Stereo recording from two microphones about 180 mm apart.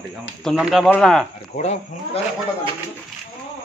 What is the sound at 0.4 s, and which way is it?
Speech, centre (ahead or behind).